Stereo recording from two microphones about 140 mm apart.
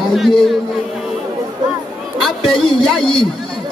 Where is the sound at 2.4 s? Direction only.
35° left (ahead or behind).